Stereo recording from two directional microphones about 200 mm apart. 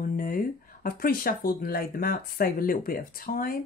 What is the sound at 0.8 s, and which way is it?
Speech, 45° left (ahead or behind).